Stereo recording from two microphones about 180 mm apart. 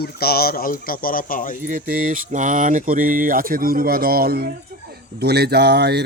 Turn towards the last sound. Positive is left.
turn(degrees=-65)  # may be behind; listen again after turning